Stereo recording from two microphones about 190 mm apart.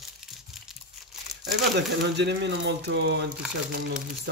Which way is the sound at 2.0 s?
65° right (ahead or behind).